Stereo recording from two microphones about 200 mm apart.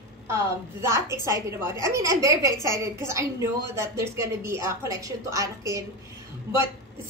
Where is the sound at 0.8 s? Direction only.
15° right (ahead or behind).